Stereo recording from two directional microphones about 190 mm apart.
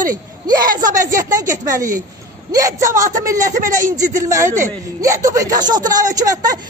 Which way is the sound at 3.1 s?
45° right (ahead or behind).